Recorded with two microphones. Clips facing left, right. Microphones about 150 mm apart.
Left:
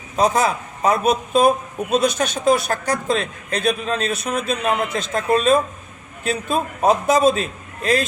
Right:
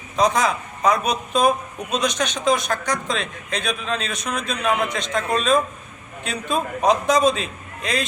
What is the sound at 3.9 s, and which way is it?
Speech, 45° left (ahead or behind).